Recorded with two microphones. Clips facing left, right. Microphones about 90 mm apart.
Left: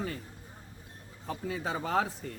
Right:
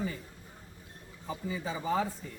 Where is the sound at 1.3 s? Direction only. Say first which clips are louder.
Left 2 dB; 65° left (ahead or behind).